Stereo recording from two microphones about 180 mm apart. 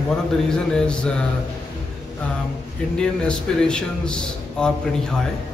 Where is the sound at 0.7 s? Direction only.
5° left (ahead or behind).